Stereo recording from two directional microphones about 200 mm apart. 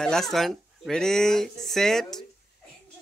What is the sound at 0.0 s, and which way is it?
Speech, centre (ahead or behind).